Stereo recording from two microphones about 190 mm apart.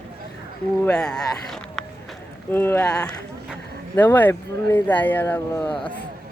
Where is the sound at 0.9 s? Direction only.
5° left (ahead or behind).